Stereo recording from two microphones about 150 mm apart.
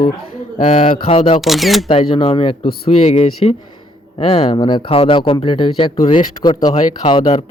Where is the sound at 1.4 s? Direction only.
Centre (ahead or behind).